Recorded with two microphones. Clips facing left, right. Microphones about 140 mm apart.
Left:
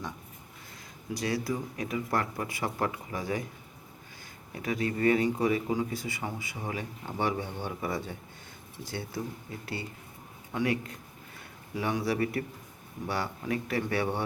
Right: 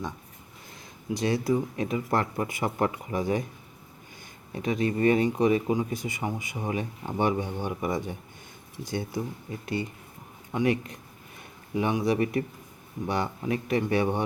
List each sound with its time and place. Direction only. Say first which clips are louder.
1.1 s speech: right 6 dB; 25° right (ahead or behind)
4.5 s speech: right 4 dB; 20° right (ahead or behind)